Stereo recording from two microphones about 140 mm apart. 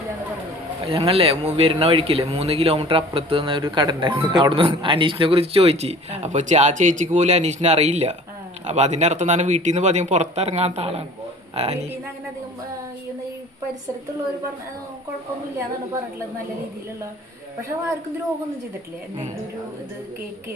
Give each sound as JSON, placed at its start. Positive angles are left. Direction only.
{"t": 0.9, "sound": "speech", "side_deg": -40}